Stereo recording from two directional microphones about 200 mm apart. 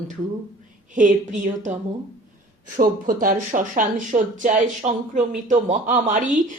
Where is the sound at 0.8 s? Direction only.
40° right (ahead or behind).